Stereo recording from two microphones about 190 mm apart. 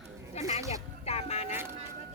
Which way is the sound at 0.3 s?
35° left (ahead or behind).